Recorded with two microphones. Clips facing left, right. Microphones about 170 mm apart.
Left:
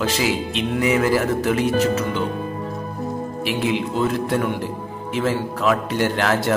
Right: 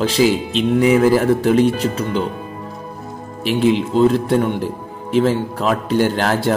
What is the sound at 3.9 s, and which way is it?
A man's voice, 30° right (ahead or behind).